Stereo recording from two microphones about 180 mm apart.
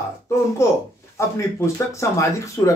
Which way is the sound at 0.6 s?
15° left (ahead or behind).